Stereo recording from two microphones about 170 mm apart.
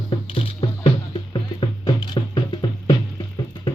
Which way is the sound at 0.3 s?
35° left (ahead or behind).